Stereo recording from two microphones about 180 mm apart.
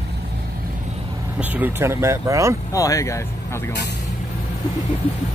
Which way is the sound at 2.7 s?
20° left (ahead or behind).